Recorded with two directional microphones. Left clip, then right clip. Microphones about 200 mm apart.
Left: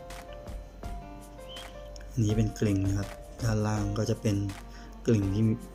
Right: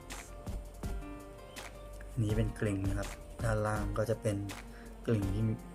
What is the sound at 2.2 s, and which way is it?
Speech, 5° left (ahead or behind).